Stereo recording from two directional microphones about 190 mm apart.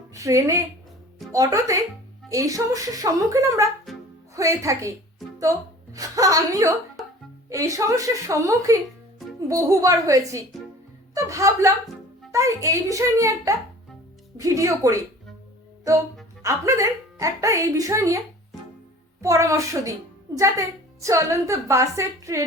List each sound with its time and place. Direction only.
0.1 s a woman's voice: 15° right (ahead or behind)
3.9 s music: centre (ahead or behind)
4.4 s a woman's voice: 15° right (ahead or behind)
16.4 s a woman's voice: 15° right (ahead or behind)
19.2 s a woman's voice: 15° right (ahead or behind)